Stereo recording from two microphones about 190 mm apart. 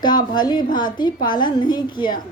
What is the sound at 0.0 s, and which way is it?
A woman's voice, 25° left (ahead or behind).